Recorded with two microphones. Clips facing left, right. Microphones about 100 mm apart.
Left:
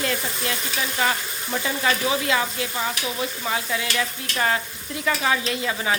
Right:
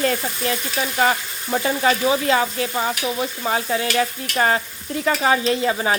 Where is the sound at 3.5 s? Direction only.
35° right (ahead or behind).